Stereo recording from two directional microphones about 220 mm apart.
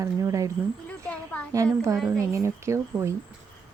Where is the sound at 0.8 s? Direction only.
5° left (ahead or behind).